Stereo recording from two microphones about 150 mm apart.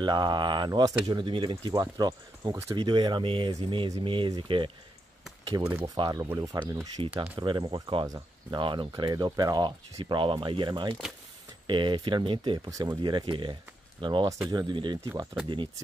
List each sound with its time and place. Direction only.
0.0 s speech: 30° right (ahead or behind)
5.8 s speech: 30° right (ahead or behind)
7.3 s speech: 30° right (ahead or behind)